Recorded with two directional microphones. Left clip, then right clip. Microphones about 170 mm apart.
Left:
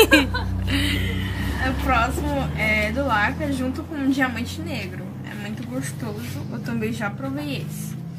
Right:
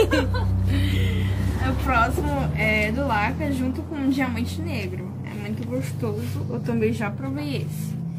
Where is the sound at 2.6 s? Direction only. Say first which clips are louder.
Left 1 dB; 25° left (ahead or behind).